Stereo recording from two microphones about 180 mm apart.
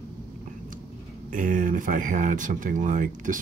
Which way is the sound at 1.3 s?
45° right (ahead or behind).